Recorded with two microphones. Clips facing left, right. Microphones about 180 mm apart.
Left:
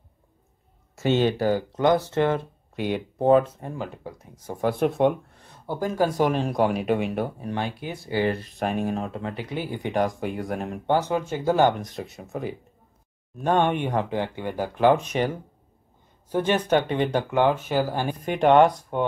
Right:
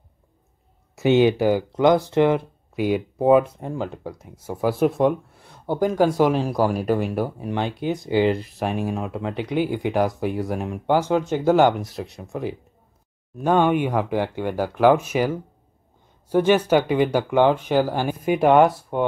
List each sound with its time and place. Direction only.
0.9 s speech: 10° right (ahead or behind)
3.7 s speech: 25° right (ahead or behind)
4.0 s speech: 10° right (ahead or behind)
7.3 s speech: 15° right (ahead or behind)
8.5 s speech: centre (ahead or behind)